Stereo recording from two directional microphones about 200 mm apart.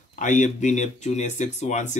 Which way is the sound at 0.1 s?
40° left (ahead or behind).